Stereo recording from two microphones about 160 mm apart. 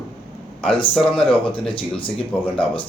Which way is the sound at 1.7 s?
35° left (ahead or behind).